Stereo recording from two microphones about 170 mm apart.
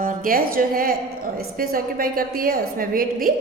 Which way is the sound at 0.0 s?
55° right (ahead or behind).